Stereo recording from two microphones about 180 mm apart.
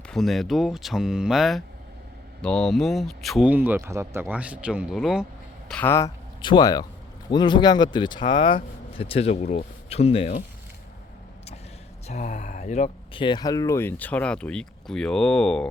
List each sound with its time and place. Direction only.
0.1 s speech: centre (ahead or behind)
6.4 s speech: 25° left (ahead or behind)
12.0 s speech: 40° left (ahead or behind)
13.2 s speech: 20° left (ahead or behind); by 15.7 s 5° left (ahead or behind)